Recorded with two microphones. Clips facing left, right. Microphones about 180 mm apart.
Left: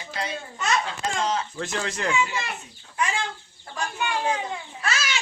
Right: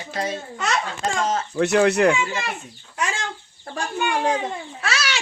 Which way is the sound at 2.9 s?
85° right.